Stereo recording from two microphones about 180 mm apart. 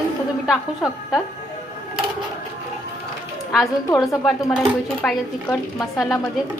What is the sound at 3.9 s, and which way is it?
Speech, 15° left (ahead or behind).